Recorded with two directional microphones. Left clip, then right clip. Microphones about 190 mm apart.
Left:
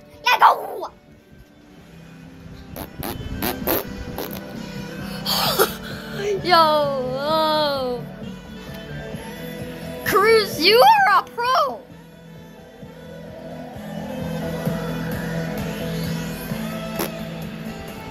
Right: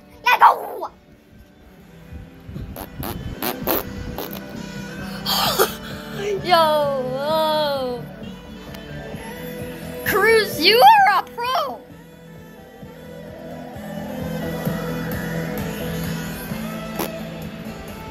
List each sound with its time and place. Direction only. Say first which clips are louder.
0.3 s a sound: right 1 dB; 15° left (ahead or behind)
2.7 s music: left 1 dB; 10° left (ahead or behind)
5.0 s music: right 1 dB; 5° left (ahead or behind)
9.2 s music: right 1 dB; 20° right (ahead or behind)
10.0 s a sound: even; 5° left (ahead or behind)
14.4 s music: even; 35° right (ahead or behind)
15.3 s music: right 1 dB; 50° right (ahead or behind)
15.8 s music: even; 25° right (ahead or behind)
16.3 s music: left 1 dB; 5° right (ahead or behind)